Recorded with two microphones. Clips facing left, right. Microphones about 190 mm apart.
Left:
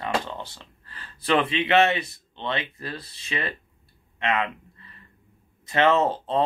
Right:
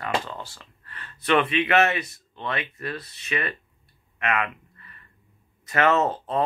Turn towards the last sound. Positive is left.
turn(degrees=25)  # may be behind; listen again after turning